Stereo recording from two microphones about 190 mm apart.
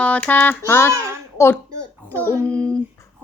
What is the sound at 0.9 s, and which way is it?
Speech, 15° right (ahead or behind).